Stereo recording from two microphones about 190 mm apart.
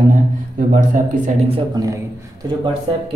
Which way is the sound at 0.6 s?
45° right (ahead or behind).